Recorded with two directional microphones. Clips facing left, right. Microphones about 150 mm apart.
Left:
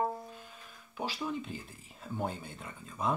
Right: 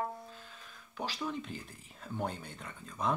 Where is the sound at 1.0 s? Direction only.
10° left (ahead or behind).